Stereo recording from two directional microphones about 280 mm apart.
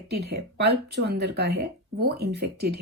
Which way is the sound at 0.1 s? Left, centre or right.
Right.